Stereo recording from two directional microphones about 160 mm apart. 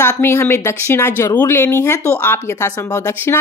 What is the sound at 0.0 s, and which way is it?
Speech, 15° left (ahead or behind).